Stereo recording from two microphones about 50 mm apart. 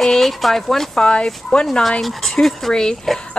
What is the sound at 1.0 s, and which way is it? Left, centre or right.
Speech, centre.